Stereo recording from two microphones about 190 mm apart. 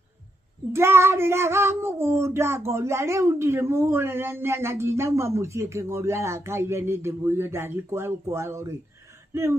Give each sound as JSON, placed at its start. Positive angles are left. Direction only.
{"t": 0.7, "sound": "child singing", "side_deg": -15}
{"t": 9.3, "sound": "speech", "side_deg": -15}